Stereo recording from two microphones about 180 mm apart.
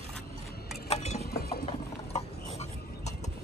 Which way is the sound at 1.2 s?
60° left (ahead or behind).